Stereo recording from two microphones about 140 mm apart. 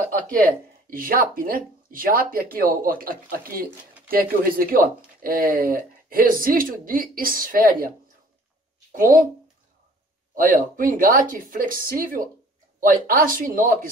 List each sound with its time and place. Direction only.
0.3 s speech: 90° right
10.3 s speech: 75° right (ahead or behind)